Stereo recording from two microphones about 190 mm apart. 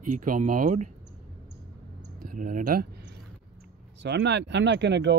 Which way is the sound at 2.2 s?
45° right (ahead or behind).